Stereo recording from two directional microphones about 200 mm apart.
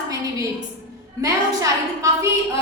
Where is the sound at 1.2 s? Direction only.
15° right (ahead or behind).